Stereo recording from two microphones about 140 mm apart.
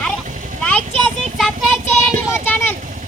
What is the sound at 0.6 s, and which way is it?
Speech, 10° left (ahead or behind).